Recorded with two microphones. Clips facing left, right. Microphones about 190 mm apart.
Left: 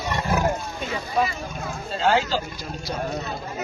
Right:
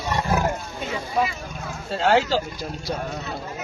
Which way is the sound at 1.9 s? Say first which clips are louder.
Right 2 dB; 70° right (ahead or behind).